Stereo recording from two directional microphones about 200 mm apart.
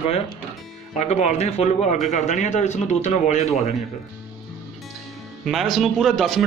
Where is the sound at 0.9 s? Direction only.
35° left (ahead or behind).